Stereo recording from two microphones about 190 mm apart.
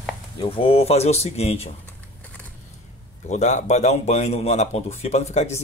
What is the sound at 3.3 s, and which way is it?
Speech, 40° left (ahead or behind).